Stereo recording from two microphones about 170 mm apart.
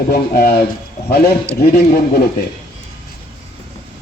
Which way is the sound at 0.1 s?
60° left (ahead or behind).